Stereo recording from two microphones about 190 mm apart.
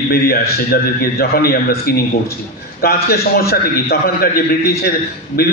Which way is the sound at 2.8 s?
55° left (ahead or behind).